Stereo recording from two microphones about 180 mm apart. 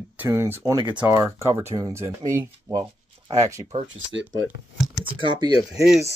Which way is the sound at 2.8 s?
35° right (ahead or behind).